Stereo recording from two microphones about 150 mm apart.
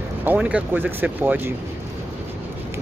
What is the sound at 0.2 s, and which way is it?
Speech, 10° right (ahead or behind).